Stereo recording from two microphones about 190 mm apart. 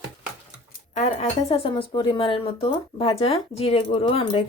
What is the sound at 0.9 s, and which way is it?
Speech, 35° left (ahead or behind).